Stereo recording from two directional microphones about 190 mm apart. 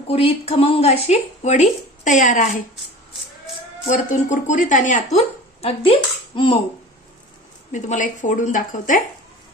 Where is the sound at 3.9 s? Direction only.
40° left (ahead or behind).